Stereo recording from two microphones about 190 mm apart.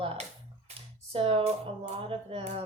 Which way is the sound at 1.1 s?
30° right (ahead or behind).